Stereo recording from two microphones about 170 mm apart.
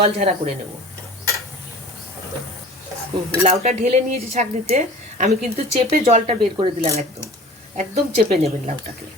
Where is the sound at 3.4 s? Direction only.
35° right (ahead or behind).